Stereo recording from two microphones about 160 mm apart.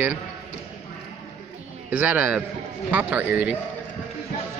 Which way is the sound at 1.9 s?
10° right (ahead or behind).